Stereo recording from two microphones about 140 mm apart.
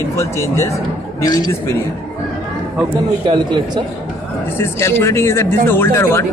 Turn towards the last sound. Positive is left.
turn(degrees=20)  # may be behind; listen again after turning